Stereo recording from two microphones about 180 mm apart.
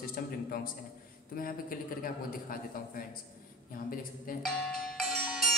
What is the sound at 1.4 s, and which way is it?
A man's voice, 50° left (ahead or behind).